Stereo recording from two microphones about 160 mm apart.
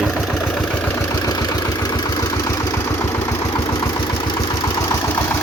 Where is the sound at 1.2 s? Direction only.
25° left (ahead or behind).